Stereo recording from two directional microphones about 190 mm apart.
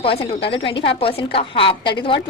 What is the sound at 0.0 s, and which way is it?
A woman's voice, 30° left (ahead or behind).